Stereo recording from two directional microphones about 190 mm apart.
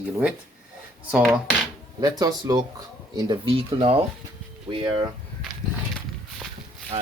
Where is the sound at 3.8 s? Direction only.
30° right (ahead or behind).